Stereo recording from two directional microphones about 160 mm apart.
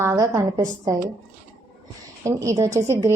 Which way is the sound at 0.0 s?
15° right (ahead or behind).